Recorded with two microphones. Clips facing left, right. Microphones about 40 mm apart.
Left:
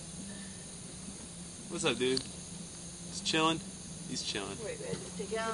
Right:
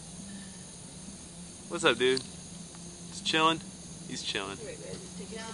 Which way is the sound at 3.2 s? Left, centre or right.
Right.